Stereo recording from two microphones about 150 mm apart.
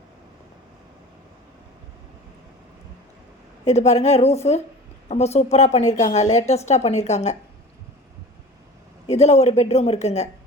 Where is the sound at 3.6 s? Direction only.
50° left (ahead or behind).